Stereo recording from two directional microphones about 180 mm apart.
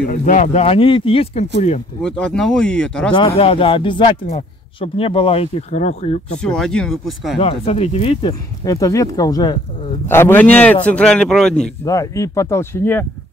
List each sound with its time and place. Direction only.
0.1 s speech: 45° left (ahead or behind)
2.0 s speech: 5° left (ahead or behind)
3.1 s speech: 30° left (ahead or behind)
6.4 s speech: 5° left (ahead or behind)
7.3 s speech: 35° left (ahead or behind)
8.6 s speech: 20° left (ahead or behind); by 11.5 s 5° left (ahead or behind)
11.8 s speech: 20° left (ahead or behind)